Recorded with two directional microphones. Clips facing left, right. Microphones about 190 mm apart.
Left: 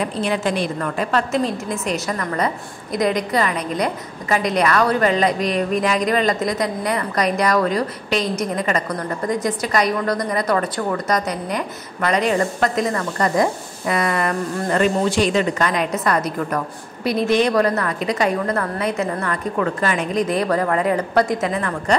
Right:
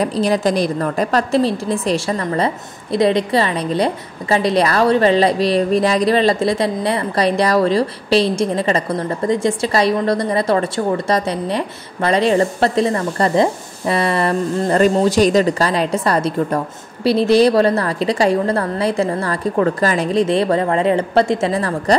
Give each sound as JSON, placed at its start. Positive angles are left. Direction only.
{"t": 0.0, "sound": "a woman's voice", "side_deg": -35}
{"t": 14.8, "sound": "a woman's voice", "side_deg": -40}